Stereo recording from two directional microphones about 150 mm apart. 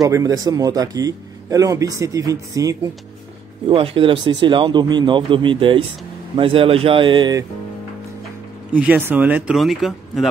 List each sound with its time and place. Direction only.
0.0 s a man's voice: 25° right (ahead or behind)
3.6 s speech: 35° right (ahead or behind)
8.7 s speech: 10° right (ahead or behind)